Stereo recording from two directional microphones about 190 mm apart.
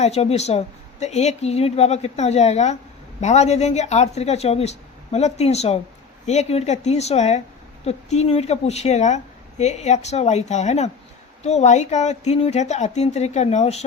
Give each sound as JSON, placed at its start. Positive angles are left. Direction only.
{"t": 0.0, "sound": "a woman's voice", "side_deg": 35}